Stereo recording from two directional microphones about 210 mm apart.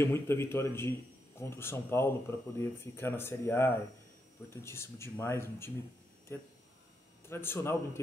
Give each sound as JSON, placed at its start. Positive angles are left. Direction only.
{"t": 0.0, "sound": "speech", "side_deg": 10}